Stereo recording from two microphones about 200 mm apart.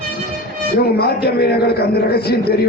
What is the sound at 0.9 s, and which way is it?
A man's voice, 50° left (ahead or behind).